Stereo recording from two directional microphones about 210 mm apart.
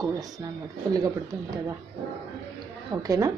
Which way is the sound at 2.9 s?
15° right (ahead or behind).